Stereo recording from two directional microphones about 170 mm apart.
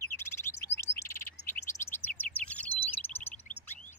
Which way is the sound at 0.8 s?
15° left (ahead or behind).